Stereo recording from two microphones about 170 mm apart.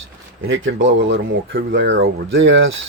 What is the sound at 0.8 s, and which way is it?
Speech, 90° right.